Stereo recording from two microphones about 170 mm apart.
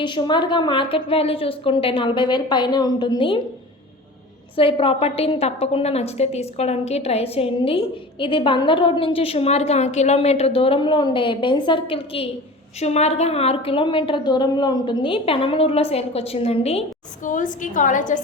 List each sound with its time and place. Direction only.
0.0 s a woman's voice: 25° left (ahead or behind)
4.5 s a woman's voice: 30° left (ahead or behind)
17.2 s a woman's voice: 50° left (ahead or behind)